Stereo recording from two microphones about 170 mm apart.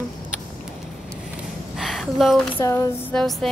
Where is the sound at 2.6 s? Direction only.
20° left (ahead or behind).